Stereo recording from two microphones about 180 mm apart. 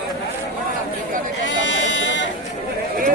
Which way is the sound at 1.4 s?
90° left.